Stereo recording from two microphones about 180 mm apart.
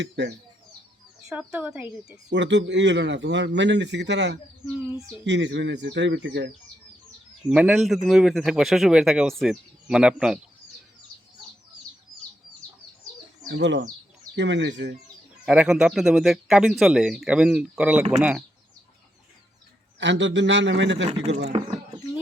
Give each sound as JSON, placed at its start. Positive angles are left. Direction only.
{"t": 0.0, "sound": "speech", "side_deg": -75}
{"t": 1.3, "sound": "a woman's voice", "side_deg": -5}
{"t": 2.3, "sound": "a man's voice", "side_deg": -80}
{"t": 4.8, "sound": "a woman's voice", "side_deg": -10}
{"t": 5.2, "sound": "a man's voice", "side_deg": -75}
{"t": 7.5, "sound": "speech", "side_deg": -5}
{"t": 13.5, "sound": "speech", "side_deg": -75}
{"t": 15.4, "sound": "a woman's voice", "side_deg": -5}
{"t": 20.0, "sound": "a man's voice", "side_deg": -80}